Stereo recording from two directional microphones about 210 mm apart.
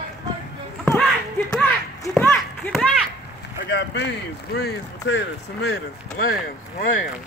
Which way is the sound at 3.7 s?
55° left (ahead or behind).